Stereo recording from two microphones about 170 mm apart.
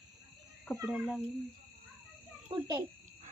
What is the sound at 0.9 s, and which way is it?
Speech, 5° right (ahead or behind).